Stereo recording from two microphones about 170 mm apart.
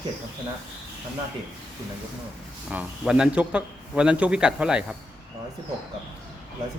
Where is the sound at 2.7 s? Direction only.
5° right (ahead or behind).